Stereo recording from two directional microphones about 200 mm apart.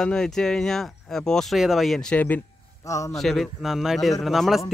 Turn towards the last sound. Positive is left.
turn(degrees=0)  # may be behind; listen again after turning